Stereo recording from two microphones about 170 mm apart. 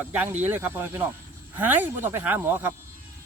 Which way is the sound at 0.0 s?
10° right (ahead or behind).